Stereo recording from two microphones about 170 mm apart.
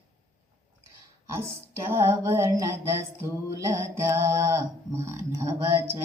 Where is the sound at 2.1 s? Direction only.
15° right (ahead or behind).